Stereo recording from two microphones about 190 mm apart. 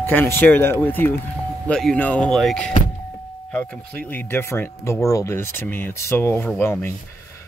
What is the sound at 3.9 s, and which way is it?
Speech, 10° left (ahead or behind).